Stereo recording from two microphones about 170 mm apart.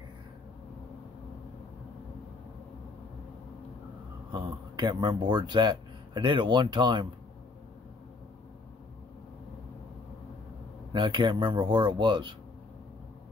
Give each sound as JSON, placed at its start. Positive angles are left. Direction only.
{"t": 4.7, "sound": "speech", "side_deg": -25}
{"t": 10.9, "sound": "speech", "side_deg": -25}